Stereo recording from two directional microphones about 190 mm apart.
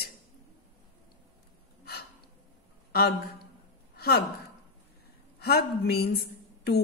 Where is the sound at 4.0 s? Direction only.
55° left (ahead or behind).